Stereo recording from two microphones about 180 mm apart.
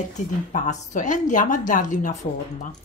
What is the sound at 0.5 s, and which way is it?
A woman's voice, 40° left (ahead or behind).